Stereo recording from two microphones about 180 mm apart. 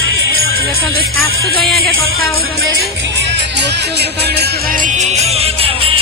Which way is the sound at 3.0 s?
75° right (ahead or behind).